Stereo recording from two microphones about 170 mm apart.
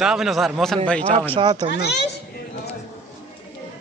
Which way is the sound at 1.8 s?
75° left (ahead or behind).